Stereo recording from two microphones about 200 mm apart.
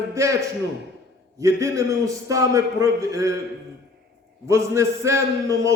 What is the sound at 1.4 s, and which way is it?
A man's voice, 15° right (ahead or behind).